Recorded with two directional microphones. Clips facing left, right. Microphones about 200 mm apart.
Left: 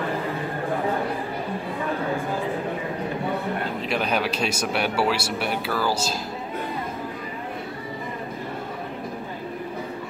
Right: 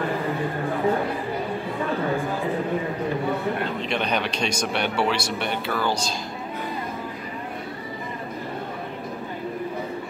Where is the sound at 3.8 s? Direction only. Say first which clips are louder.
Left 3 dB; 5° left (ahead or behind).